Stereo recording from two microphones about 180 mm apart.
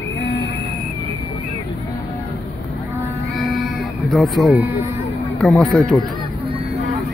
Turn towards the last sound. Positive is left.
turn(degrees=0)  # may be behind; listen again after turning